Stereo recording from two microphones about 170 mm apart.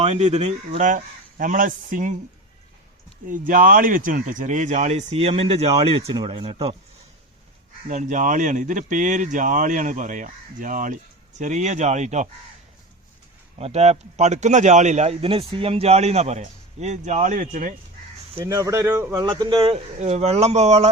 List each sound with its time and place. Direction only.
0.0 s speech: 40° right (ahead or behind)
3.2 s a man's voice: 50° right (ahead or behind); by 6.7 s 30° right (ahead or behind)
7.9 s speech: 45° right (ahead or behind)
13.6 s a man's voice: 40° right (ahead or behind)
18.3 s a man's voice: 15° right (ahead or behind); by 20.9 s 40° right (ahead or behind)